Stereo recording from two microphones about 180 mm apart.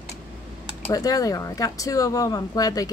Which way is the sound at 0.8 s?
20° left (ahead or behind).